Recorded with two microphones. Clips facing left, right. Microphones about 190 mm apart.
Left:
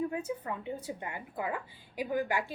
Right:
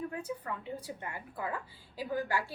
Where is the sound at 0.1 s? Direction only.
20° left (ahead or behind).